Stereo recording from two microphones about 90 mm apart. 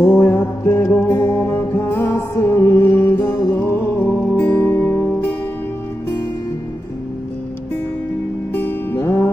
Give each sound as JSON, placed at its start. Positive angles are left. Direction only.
{"t": 0.0, "sound": "music", "side_deg": 30}
{"t": 8.5, "sound": "music", "side_deg": 25}